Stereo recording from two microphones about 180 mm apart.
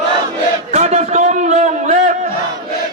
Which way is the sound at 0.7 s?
40° right (ahead or behind).